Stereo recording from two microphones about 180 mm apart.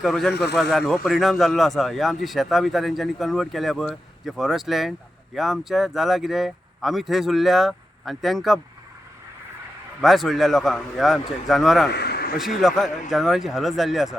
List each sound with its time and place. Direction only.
0.0 s speech: centre (ahead or behind)
10.0 s speech: centre (ahead or behind)
11.9 s a sound: 65° left (ahead or behind)
12.5 s speech: centre (ahead or behind)